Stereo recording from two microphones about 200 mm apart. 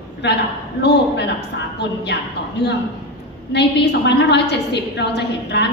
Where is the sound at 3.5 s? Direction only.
55° left (ahead or behind).